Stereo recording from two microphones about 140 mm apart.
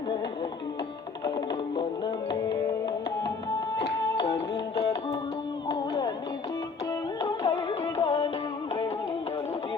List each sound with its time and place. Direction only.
1.7 s music: 30° left (ahead or behind)
3.8 s music: 30° left (ahead or behind)
5.6 s music: 30° left (ahead or behind)
7.2 s music: 25° left (ahead or behind)